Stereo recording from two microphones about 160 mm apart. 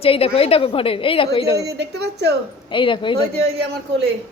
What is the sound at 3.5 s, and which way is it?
Speech, 90° right.